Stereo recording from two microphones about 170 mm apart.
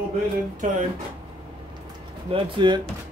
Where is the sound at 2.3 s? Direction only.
30° right (ahead or behind).